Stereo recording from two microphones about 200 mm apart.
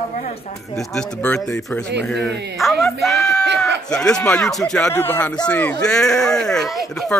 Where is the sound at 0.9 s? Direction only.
10° left (ahead or behind).